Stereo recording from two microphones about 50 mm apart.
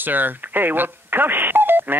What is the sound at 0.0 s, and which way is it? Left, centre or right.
Speech, right.